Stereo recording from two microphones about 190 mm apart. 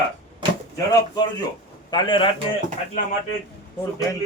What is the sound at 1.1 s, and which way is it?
Speech, 20° left (ahead or behind).